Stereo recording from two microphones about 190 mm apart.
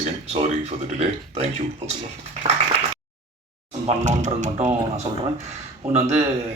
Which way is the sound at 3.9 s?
40° right (ahead or behind).